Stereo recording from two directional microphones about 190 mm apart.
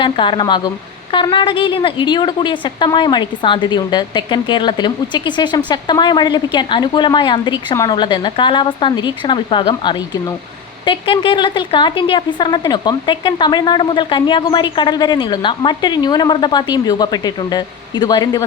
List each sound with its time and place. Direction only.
0.0 s a woman's voice: 25° left (ahead or behind)